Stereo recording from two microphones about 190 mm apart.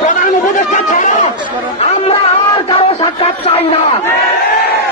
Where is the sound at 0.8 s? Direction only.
40° left (ahead or behind).